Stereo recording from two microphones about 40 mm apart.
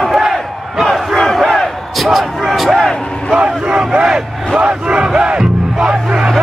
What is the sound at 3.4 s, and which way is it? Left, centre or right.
Crowd, right.